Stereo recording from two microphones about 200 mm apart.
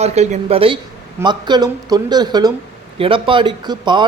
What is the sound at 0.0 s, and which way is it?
Speech, 35° right (ahead or behind).